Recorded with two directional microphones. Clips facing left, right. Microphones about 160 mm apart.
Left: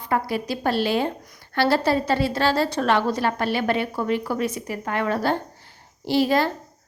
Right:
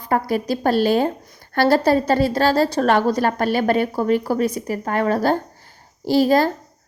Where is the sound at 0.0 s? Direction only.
45° right (ahead or behind).